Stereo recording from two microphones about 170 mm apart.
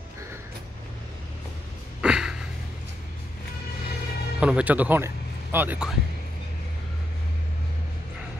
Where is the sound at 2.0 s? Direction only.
5° right (ahead or behind).